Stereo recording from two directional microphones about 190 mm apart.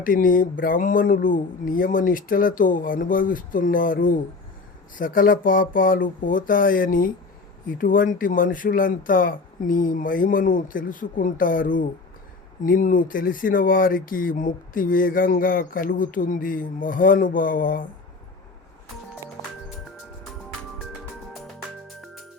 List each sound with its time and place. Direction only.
0.0 s speech: 45° left (ahead or behind)